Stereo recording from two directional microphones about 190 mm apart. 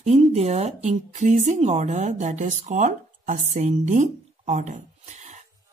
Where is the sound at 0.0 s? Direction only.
35° right (ahead or behind).